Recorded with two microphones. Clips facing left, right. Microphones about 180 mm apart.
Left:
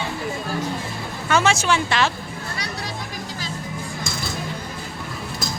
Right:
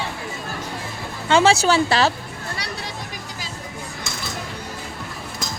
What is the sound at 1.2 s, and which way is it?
Speech, 30° right (ahead or behind).